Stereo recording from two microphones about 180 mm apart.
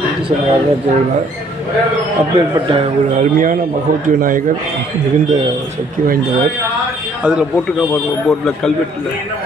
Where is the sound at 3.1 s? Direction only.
45° right (ahead or behind).